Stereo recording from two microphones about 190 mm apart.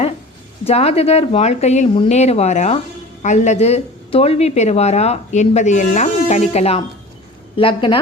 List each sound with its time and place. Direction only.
0.6 s a woman's voice: 35° left (ahead or behind)